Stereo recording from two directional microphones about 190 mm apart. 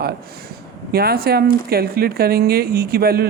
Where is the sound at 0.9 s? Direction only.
55° right (ahead or behind).